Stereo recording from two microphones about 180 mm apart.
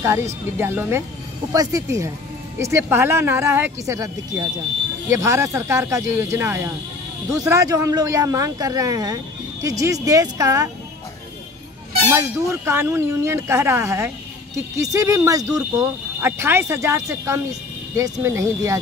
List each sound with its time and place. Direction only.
0.0 s speech: 15° right (ahead or behind)
12.1 s speech: 15° right (ahead or behind)